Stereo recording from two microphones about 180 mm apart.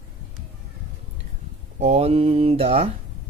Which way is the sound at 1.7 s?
35° right (ahead or behind).